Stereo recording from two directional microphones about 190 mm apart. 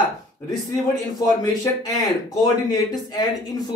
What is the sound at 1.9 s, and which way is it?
Speech, 20° left (ahead or behind).